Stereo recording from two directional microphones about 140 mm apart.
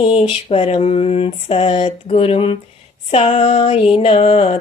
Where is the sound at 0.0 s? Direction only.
40° left (ahead or behind).